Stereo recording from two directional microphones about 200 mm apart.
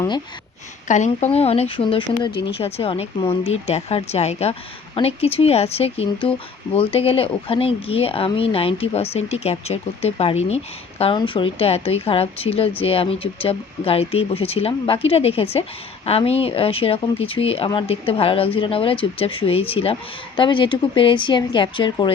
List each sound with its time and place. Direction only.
0.9 s speech: 35° left (ahead or behind)